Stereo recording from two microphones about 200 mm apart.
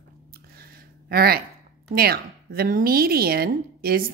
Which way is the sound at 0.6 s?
50° right (ahead or behind).